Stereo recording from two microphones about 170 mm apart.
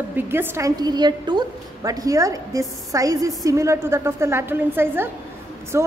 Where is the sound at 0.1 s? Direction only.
10° right (ahead or behind).